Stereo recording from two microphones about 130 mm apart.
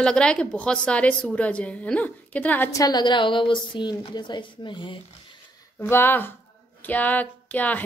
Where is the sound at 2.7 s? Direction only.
30° left (ahead or behind).